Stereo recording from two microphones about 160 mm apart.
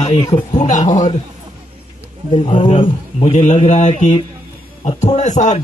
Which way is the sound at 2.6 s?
35° left (ahead or behind).